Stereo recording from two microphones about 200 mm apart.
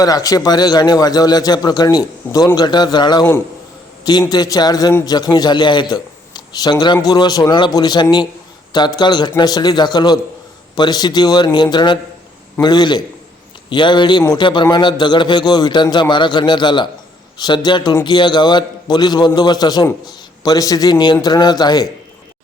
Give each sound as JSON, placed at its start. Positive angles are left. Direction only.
{"t": 0.0, "sound": "a man's voice", "side_deg": 20}